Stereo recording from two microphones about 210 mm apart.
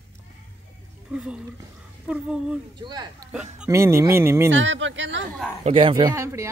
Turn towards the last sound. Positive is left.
turn(degrees=-15)  # may be behind; listen again after turning